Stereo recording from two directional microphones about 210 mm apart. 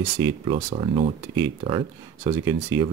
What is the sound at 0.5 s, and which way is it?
Speech, 30° right (ahead or behind).